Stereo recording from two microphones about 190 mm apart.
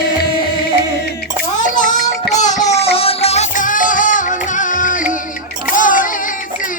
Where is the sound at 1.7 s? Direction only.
40° left (ahead or behind).